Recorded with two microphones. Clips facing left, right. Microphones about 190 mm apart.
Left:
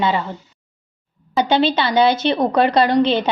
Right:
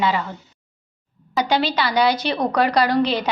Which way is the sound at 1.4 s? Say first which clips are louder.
Left 4 dB; 25° left (ahead or behind).